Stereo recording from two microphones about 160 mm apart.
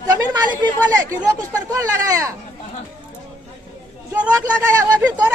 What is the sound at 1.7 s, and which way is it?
Speech, 20° right (ahead or behind).